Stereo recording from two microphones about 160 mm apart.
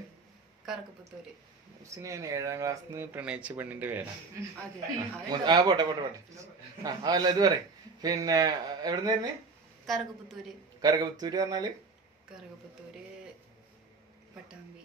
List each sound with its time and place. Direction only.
0.7 s a woman's voice: 5° right (ahead or behind)
2.0 s speech: 20° right (ahead or behind)
5.3 s a man's voice: 25° right (ahead or behind)
9.8 s a woman's voice: centre (ahead or behind)
10.8 s a man's voice: 25° right (ahead or behind)